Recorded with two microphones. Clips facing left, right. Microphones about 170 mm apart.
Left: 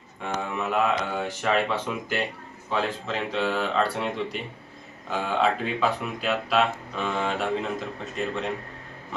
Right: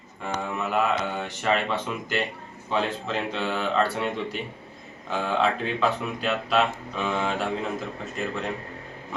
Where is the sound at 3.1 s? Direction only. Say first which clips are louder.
Left 1 dB; centre (ahead or behind).